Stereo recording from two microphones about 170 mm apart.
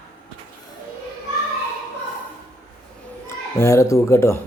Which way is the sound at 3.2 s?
15° left (ahead or behind).